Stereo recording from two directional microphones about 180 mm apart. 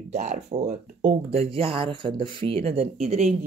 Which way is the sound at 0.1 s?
40° right (ahead or behind).